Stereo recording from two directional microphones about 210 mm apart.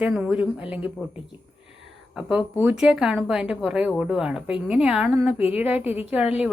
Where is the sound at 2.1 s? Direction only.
5° right (ahead or behind).